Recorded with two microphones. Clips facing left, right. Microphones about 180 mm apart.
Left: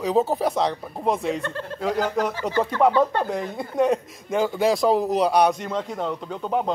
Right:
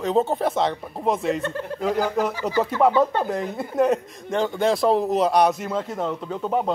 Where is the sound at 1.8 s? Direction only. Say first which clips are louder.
Right 1 dB; 5° right (ahead or behind).